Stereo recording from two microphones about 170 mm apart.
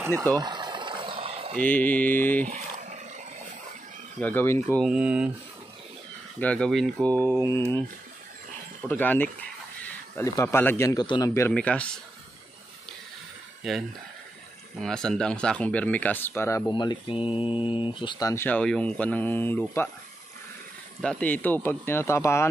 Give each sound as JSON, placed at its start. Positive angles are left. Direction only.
{"t": 0.0, "sound": "a sound", "side_deg": -20}
{"t": 1.6, "sound": "speech", "side_deg": 10}
{"t": 2.4, "sound": "roaring cats", "side_deg": -45}
{"t": 4.2, "sound": "speech", "side_deg": 10}
{"t": 4.7, "sound": "speech", "side_deg": -5}
{"t": 6.4, "sound": "speech", "side_deg": 5}
{"t": 8.8, "sound": "speech", "side_deg": 10}
{"t": 13.6, "sound": "speech", "side_deg": 0}
{"t": 16.7, "sound": "speech", "side_deg": 25}
{"t": 17.2, "sound": "mantra", "side_deg": -10}
{"t": 17.6, "sound": "speech", "side_deg": 30}
{"t": 21.0, "sound": "speech", "side_deg": 5}